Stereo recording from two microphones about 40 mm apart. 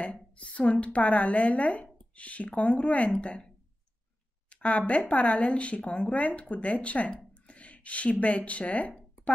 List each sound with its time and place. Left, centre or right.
0.0 s a woman's voice: left